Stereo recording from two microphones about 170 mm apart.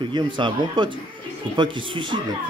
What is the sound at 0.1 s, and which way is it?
Speech, 25° right (ahead or behind).